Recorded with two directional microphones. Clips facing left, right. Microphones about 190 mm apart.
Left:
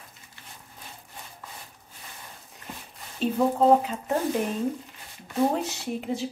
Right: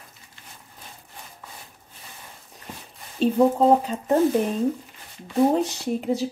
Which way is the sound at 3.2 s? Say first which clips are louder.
Right 4 dB; 30° right (ahead or behind).